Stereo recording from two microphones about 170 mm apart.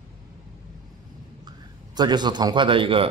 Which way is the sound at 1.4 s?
25° right (ahead or behind).